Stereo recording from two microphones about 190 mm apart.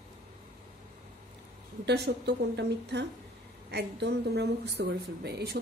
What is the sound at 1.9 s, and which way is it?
A woman's voice, 65° right (ahead or behind).